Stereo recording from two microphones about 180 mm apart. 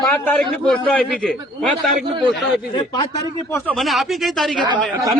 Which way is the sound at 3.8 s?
Centre (ahead or behind).